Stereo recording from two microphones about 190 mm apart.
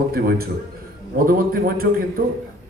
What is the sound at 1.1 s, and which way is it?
Speech, 50° right (ahead or behind).